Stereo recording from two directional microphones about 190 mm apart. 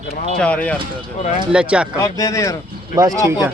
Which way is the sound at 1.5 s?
5° right (ahead or behind).